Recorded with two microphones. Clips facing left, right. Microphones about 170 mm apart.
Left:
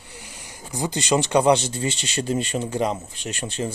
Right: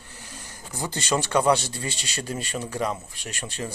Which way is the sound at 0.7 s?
15° left (ahead or behind).